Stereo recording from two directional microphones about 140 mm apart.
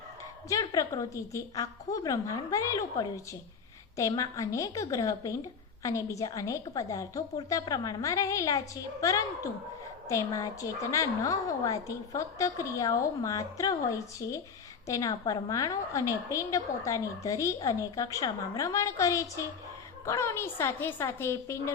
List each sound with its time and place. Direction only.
0.4 s a woman's voice: 25° left (ahead or behind)